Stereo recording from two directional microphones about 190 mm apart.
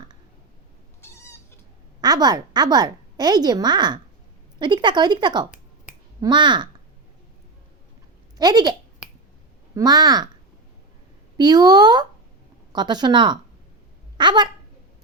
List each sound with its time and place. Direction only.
1.0 s cat: 15° left (ahead or behind)
2.0 s a woman's voice: 20° right (ahead or behind)
8.4 s a woman's voice: 20° right (ahead or behind)
9.7 s a woman's voice: 20° right (ahead or behind)
11.3 s a woman's voice: 20° right (ahead or behind)